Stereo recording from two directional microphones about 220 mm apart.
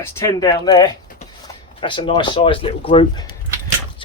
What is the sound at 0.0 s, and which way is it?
Speech, 15° left (ahead or behind).